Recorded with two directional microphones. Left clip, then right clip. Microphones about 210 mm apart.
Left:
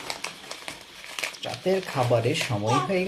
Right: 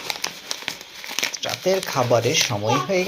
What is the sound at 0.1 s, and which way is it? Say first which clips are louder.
Crumpling: right 8 dB; 50° right (ahead or behind).